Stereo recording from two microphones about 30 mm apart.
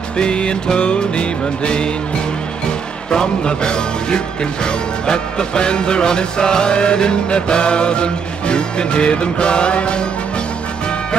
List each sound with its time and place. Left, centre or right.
0.2 s music: left
3.1 s music: left